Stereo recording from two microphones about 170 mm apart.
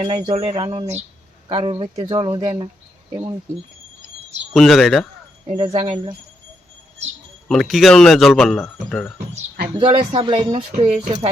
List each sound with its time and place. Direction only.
0.0 s speech: 30° right (ahead or behind)
4.5 s speech: centre (ahead or behind)
5.5 s speech: 30° right (ahead or behind)
7.4 s speech: centre (ahead or behind)
9.8 s speech: 30° right (ahead or behind)
10.7 s speech: 50° right (ahead or behind)